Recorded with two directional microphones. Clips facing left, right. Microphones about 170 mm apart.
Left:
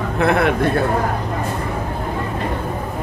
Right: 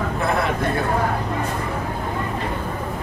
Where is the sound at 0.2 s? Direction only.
65° left (ahead or behind).